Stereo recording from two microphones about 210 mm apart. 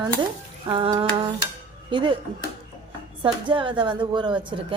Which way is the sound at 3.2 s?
25° right (ahead or behind).